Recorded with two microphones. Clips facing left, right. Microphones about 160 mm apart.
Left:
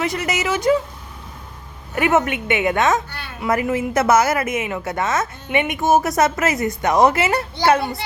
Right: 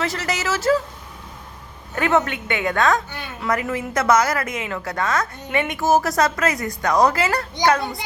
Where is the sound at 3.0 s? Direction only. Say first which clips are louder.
Right 1 dB; 15° right (ahead or behind).